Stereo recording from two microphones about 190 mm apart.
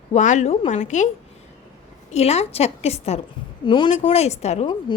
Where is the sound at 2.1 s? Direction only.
35° left (ahead or behind).